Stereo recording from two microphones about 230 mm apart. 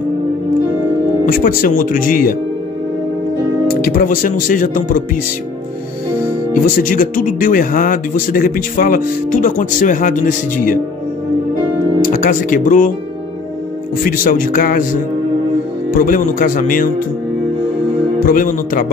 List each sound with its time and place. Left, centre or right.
1.2 s speech: left
3.6 s speech: left
6.5 s speech: left
12.0 s speech: left
14.0 s speech: left
15.9 s speech: left
18.2 s speech: left